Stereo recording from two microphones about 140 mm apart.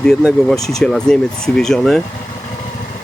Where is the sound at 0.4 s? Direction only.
5° left (ahead or behind).